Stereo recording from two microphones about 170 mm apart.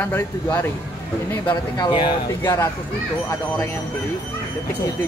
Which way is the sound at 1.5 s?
25° left (ahead or behind).